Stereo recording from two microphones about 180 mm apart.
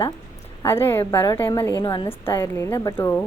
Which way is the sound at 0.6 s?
15° left (ahead or behind).